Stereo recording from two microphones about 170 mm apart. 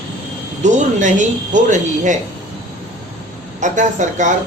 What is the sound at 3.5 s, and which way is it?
Speech, 45° right (ahead or behind).